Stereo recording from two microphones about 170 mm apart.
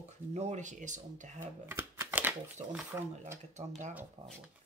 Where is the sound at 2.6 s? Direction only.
30° right (ahead or behind).